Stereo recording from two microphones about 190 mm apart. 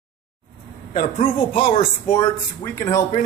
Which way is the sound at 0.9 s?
45° left (ahead or behind).